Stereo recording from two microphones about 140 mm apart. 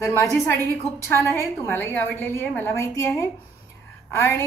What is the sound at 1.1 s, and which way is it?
A woman's voice, 20° left (ahead or behind).